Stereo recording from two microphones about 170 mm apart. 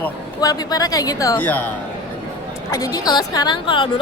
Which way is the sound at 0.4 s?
20° left (ahead or behind).